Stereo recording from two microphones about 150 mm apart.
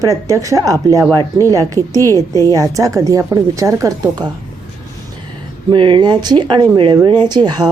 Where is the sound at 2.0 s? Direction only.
20° left (ahead or behind).